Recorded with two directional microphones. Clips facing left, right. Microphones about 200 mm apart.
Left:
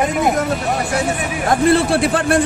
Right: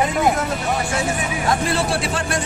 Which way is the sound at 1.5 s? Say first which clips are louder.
Left 8 dB; 55° left (ahead or behind).